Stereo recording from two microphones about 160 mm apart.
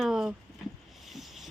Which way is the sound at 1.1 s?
Centre (ahead or behind).